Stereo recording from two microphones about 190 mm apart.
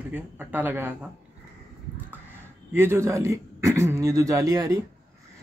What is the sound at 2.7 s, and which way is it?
Speech, 15° right (ahead or behind).